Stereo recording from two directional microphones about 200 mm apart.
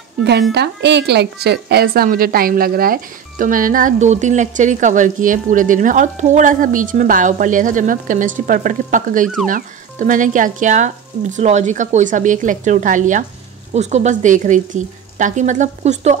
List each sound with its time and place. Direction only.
0.2 s a woman's voice: 55° right (ahead or behind); by 16.2 s 35° right (ahead or behind)